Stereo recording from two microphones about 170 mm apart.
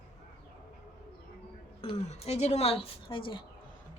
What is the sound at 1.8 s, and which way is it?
Speech, 35° left (ahead or behind).